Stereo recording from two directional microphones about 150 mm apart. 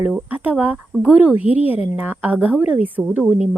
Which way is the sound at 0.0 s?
10° right (ahead or behind).